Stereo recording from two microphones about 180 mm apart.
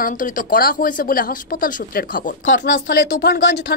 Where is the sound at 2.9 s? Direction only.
70° left (ahead or behind).